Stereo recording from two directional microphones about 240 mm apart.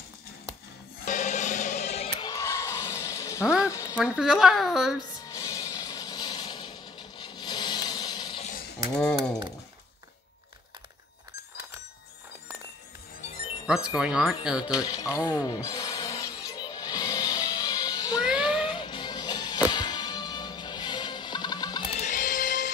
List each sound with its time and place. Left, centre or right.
1.0 s music: left; by 3.4 s centre
3.4 s a sound: centre
3.9 s speech: centre
5.3 s a sound: centre
8.5 s pulleys: left
8.9 s speech: centre
13.2 s music: left
13.9 s speech: centre
14.7 s speech: centre
15.4 s music: centre; by 22.7 s left